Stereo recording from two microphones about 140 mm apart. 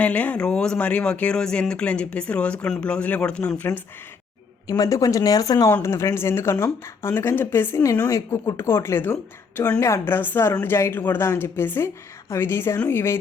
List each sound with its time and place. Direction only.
0.0 s speech: 10° left (ahead or behind)
4.6 s speech: 25° left (ahead or behind)